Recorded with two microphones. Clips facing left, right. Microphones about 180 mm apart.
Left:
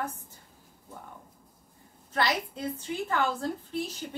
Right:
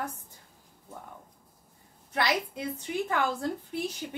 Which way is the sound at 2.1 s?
15° right (ahead or behind).